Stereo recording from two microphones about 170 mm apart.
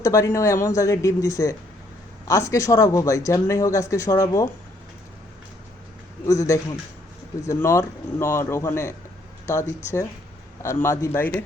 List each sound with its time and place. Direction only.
0.0 s speech: 20° left (ahead or behind)
6.2 s speech: 20° left (ahead or behind)